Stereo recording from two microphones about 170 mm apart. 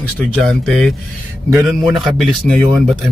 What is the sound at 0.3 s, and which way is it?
Speech, 5° left (ahead or behind).